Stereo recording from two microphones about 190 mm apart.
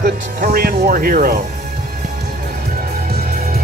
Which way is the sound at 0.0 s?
55° right (ahead or behind).